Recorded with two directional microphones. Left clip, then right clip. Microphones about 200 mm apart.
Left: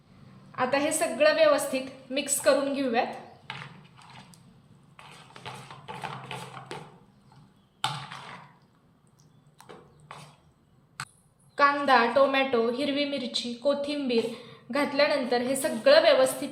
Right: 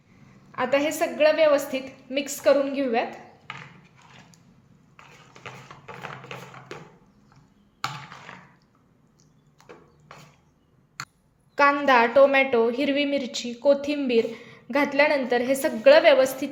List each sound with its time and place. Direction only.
0.5 s a woman's voice: 35° right (ahead or behind)
3.5 s horse: 10° left (ahead or behind)
6.7 s a sound: 5° left (ahead or behind)
11.5 s a woman's voice: 35° right (ahead or behind)